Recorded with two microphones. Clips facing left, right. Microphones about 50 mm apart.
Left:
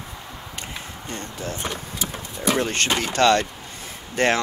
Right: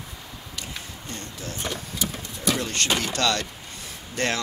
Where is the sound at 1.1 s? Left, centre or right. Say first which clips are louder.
Left 5 dB; left.